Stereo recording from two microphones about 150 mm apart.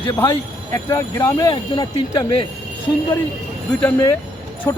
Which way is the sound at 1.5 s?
30° left (ahead or behind).